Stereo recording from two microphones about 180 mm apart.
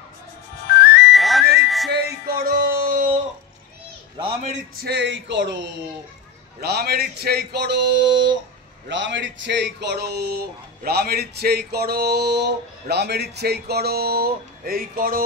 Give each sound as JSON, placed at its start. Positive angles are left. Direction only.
{"t": 0.7, "sound": "music", "side_deg": 65}
{"t": 1.1, "sound": "music", "side_deg": 0}
{"t": 1.9, "sound": "music", "side_deg": -60}
{"t": 4.8, "sound": "speech", "side_deg": -70}
{"t": 6.6, "sound": "speech", "side_deg": -65}
{"t": 8.8, "sound": "speech", "side_deg": -90}